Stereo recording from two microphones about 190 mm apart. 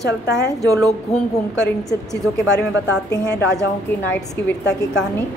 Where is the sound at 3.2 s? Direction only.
5° left (ahead or behind).